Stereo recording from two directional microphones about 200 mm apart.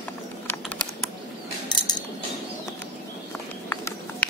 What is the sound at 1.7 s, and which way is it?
Cutlery, 20° left (ahead or behind).